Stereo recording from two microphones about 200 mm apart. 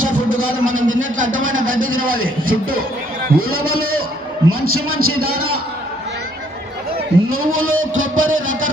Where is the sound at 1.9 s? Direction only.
45° right (ahead or behind).